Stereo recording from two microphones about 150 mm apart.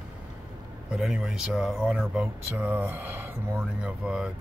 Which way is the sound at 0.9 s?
5° right (ahead or behind).